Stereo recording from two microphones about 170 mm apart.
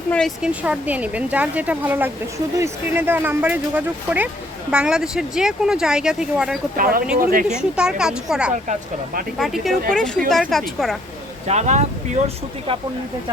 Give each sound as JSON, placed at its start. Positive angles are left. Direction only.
{"t": 0.1, "sound": "a woman's voice", "side_deg": 0}
{"t": 6.7, "sound": "speech", "side_deg": -60}
{"t": 7.4, "sound": "speech", "side_deg": -5}
{"t": 11.4, "sound": "speech", "side_deg": -40}